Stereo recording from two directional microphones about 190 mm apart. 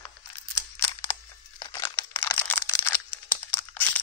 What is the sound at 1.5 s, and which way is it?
Crumpling, 20° left (ahead or behind).